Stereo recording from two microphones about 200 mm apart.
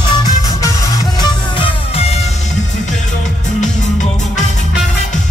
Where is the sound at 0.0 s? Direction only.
15° left (ahead or behind).